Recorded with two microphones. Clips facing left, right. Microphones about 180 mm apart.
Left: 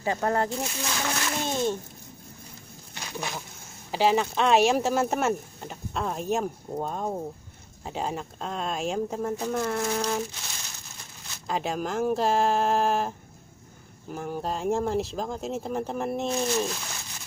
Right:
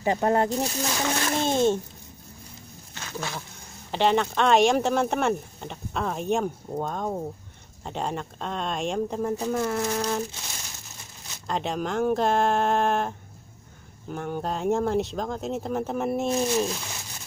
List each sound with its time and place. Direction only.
0.0 s speech: 20° right (ahead or behind)
0.5 s speech: 35° right (ahead or behind)
2.9 s a sound: 15° left (ahead or behind)
3.9 s speech: 5° left (ahead or behind)
11.4 s speech: 5° left (ahead or behind)
14.1 s speech: 5° left (ahead or behind)